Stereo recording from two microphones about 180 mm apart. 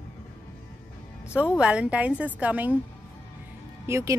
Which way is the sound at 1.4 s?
5° right (ahead or behind).